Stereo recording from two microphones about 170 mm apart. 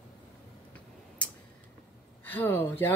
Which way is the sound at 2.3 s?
10° left (ahead or behind).